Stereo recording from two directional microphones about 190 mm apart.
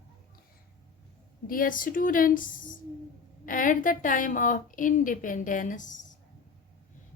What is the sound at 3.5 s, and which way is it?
A woman's voice, 45° left (ahead or behind).